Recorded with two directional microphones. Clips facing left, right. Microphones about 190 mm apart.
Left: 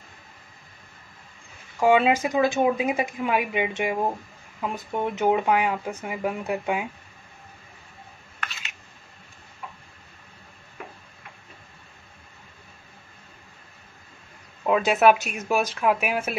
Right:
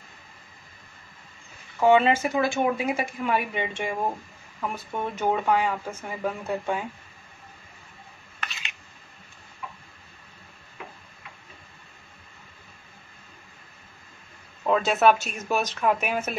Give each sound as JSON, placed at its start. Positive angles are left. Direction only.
{"t": 1.8, "sound": "speech", "side_deg": 10}
{"t": 8.5, "sound": "a sound", "side_deg": 0}
{"t": 14.7, "sound": "speech", "side_deg": 10}